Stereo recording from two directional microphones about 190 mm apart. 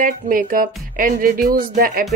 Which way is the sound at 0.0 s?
45° right (ahead or behind).